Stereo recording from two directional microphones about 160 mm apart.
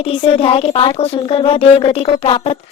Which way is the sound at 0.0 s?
35° left (ahead or behind).